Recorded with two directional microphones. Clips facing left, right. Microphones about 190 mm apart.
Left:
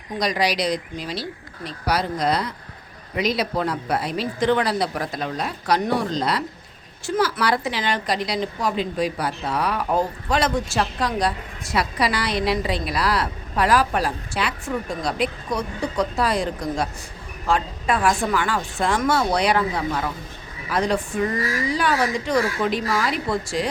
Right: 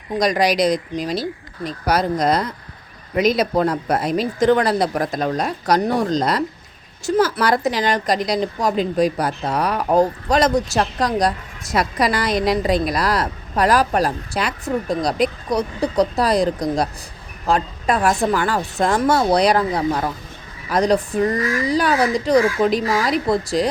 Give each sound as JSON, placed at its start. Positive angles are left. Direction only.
{"t": 0.2, "sound": "a woman's voice", "side_deg": -45}